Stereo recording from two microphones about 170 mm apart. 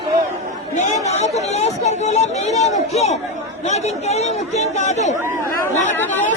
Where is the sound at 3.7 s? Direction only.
40° left (ahead or behind).